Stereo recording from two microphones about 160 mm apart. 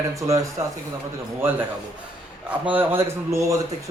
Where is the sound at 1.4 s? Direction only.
15° right (ahead or behind).